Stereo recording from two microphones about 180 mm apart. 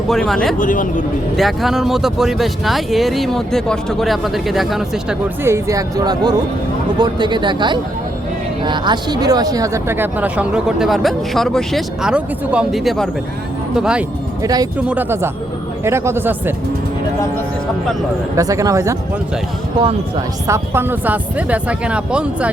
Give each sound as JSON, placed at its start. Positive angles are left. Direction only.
{"t": 0.1, "sound": "speech", "side_deg": 5}
{"t": 0.6, "sound": "speech", "side_deg": 50}
{"t": 1.4, "sound": "speech", "side_deg": 0}
{"t": 5.4, "sound": "speech", "side_deg": -15}
{"t": 14.4, "sound": "speech", "side_deg": -20}
{"t": 18.3, "sound": "speech", "side_deg": -20}
{"t": 20.5, "sound": "speech", "side_deg": -15}